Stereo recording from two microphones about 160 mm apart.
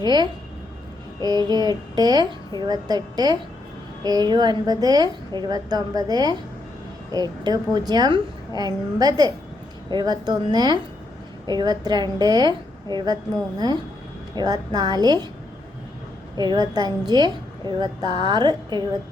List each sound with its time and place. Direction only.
0.0 s a woman's voice: 25° right (ahead or behind)
14.3 s a woman's voice: 25° right (ahead or behind)
16.4 s a woman's voice: 25° right (ahead or behind)